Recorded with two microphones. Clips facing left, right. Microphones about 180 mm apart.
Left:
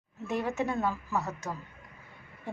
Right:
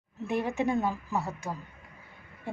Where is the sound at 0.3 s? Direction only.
15° right (ahead or behind).